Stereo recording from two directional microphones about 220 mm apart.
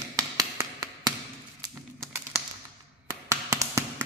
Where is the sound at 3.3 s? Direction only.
10° right (ahead or behind).